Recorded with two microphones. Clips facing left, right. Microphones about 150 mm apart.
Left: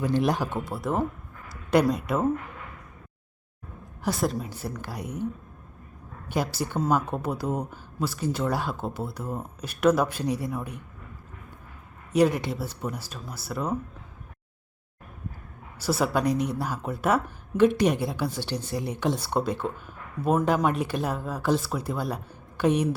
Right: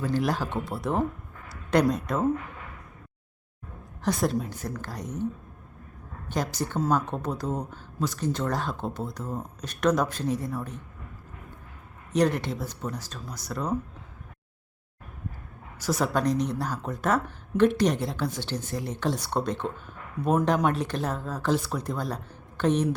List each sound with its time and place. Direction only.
0.0 s speech: 20° left (ahead or behind)
0.5 s speech: centre (ahead or behind)
4.0 s speech: 5° left (ahead or behind)
12.1 s speech: 10° left (ahead or behind)
15.8 s speech: 10° left (ahead or behind)